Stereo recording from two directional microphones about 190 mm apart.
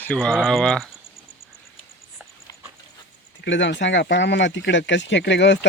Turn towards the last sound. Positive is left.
turn(degrees=65)  # may be behind; listen again after turning